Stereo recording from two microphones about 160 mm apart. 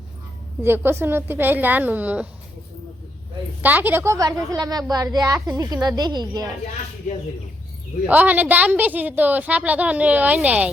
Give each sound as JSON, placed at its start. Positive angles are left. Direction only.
{"t": 0.6, "sound": "a woman's voice", "side_deg": -15}
{"t": 3.6, "sound": "a woman's voice", "side_deg": -10}
{"t": 8.0, "sound": "a woman's voice", "side_deg": -10}